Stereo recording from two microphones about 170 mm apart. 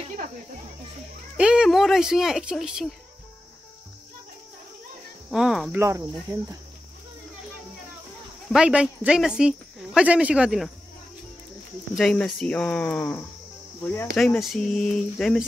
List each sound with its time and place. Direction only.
1.3 s speech: 5° right (ahead or behind)
5.3 s speech: centre (ahead or behind)
5.8 s cricket: 15° right (ahead or behind)
8.5 s speech: 5° right (ahead or behind)
11.9 s speech: 5° left (ahead or behind)